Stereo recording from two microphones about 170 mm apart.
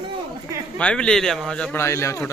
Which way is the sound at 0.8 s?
5° left (ahead or behind).